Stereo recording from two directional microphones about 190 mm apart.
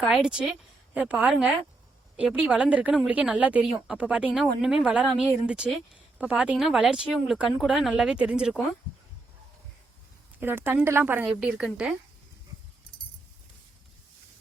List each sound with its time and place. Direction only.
0.0 s a woman's voice: centre (ahead or behind)
10.4 s a woman's voice: 10° right (ahead or behind)